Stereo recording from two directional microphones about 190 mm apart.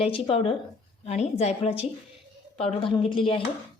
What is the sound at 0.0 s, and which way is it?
A woman's voice, 30° left (ahead or behind).